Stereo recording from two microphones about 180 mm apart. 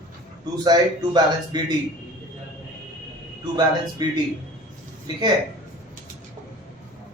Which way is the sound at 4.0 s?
25° right (ahead or behind).